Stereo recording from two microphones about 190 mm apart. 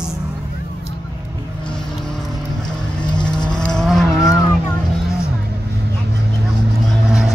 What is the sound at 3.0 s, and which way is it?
Vehicle, 25° left (ahead or behind).